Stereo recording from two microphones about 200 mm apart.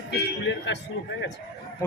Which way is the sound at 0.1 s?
65° left (ahead or behind).